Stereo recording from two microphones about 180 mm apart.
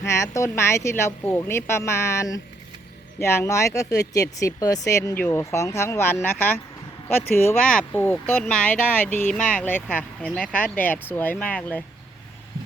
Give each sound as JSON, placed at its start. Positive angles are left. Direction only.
{"t": 0.0, "sound": "speech", "side_deg": 15}
{"t": 7.3, "sound": "speech", "side_deg": 10}